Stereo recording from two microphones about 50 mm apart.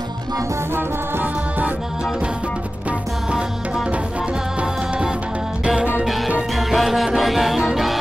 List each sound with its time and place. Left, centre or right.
4.6 s music: right
6.5 s music: centre